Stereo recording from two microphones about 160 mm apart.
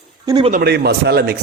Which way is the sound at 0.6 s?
90° right.